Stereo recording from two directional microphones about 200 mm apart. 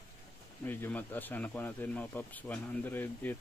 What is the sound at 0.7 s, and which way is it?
Speech, 10° left (ahead or behind).